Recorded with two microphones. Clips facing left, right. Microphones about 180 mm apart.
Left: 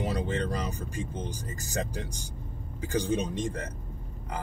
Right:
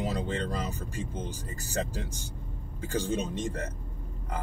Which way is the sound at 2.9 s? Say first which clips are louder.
Left 2 dB; 15° left (ahead or behind).